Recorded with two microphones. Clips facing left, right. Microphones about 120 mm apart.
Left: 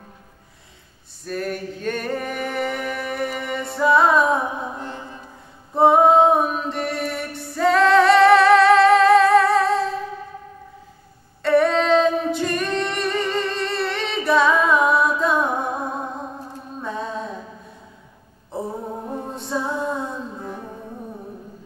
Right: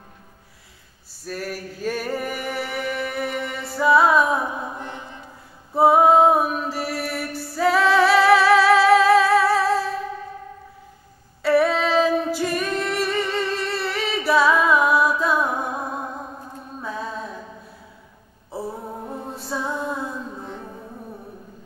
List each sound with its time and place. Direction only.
1.2 s music: 5° right (ahead or behind)
4.7 s music: 20° right (ahead or behind)
5.8 s music: 5° right (ahead or behind)
11.4 s a capella: 5° right (ahead or behind)
16.8 s music: 5° right (ahead or behind)
18.5 s a sound: 5° right (ahead or behind)
19.3 s music: centre (ahead or behind)